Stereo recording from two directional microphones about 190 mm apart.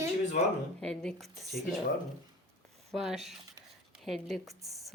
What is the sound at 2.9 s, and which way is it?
Speech, centre (ahead or behind).